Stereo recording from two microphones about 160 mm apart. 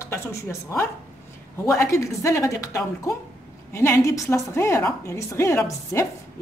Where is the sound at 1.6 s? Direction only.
20° left (ahead or behind).